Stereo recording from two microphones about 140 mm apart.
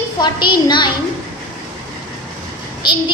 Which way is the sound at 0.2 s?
35° left (ahead or behind).